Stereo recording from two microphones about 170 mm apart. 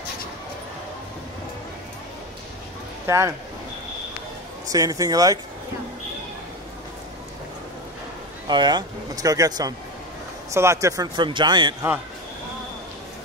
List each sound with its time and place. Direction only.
3.1 s speech: 15° right (ahead or behind)
4.7 s speech: 20° right (ahead or behind)
8.5 s speech: 25° right (ahead or behind)